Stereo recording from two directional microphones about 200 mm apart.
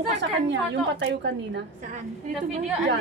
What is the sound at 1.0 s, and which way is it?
Speech, 60° right (ahead or behind).